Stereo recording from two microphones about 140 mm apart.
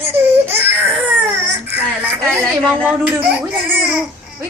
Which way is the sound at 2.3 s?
10° left (ahead or behind).